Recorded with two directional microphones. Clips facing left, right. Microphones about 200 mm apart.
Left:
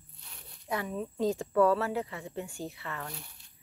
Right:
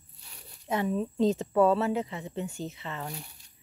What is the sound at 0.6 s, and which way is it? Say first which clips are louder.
Speech: right 5 dB; 25° right (ahead or behind).